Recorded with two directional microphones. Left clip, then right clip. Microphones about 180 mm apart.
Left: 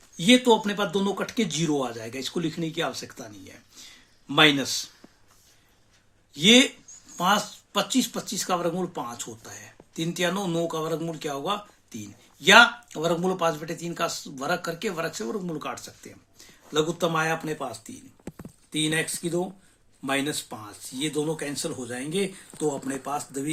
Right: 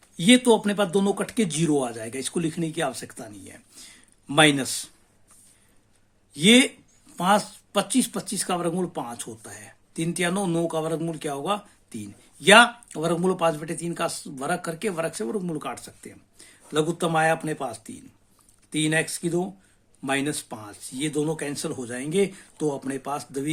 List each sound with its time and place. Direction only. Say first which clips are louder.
0.2 s speech: right 1 dB; 50° right (ahead or behind)
6.3 s speech: even; 45° right (ahead or behind)